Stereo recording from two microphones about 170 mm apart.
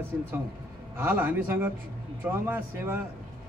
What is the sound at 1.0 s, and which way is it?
Speech, 10° right (ahead or behind).